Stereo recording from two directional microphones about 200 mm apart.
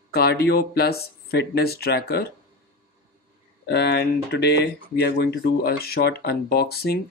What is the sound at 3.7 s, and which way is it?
Speech, 55° left (ahead or behind).